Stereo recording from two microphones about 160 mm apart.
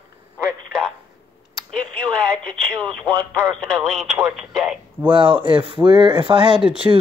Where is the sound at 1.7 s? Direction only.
5° left (ahead or behind).